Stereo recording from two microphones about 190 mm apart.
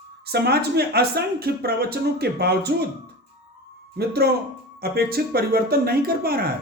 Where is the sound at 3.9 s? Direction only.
55° right (ahead or behind).